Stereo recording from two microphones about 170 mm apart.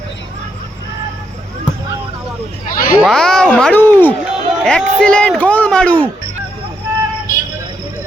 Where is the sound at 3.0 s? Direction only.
5° left (ahead or behind).